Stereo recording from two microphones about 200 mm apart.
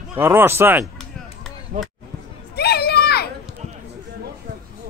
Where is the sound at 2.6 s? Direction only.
55° left (ahead or behind).